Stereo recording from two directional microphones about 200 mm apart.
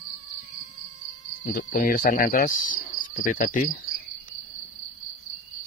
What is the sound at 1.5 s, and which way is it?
Speech, 45° left (ahead or behind).